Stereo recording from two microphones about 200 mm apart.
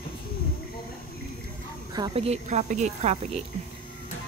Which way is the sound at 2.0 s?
25° right (ahead or behind).